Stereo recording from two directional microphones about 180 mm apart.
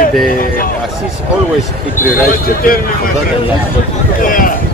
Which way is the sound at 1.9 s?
50° left (ahead or behind).